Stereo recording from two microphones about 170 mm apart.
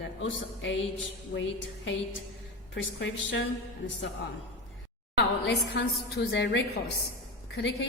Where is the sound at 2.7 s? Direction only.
90° left.